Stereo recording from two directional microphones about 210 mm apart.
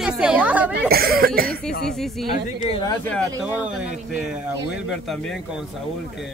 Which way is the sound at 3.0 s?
5° left (ahead or behind).